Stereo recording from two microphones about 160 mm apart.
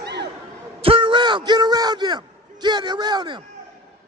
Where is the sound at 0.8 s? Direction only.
35° right (ahead or behind).